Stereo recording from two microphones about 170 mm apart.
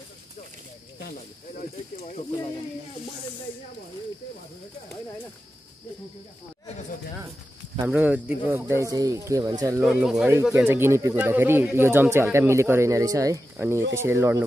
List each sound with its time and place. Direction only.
1.6 s speech: 40° left (ahead or behind)
7.8 s speech: 10° right (ahead or behind)
9.8 s speech: 5° right (ahead or behind)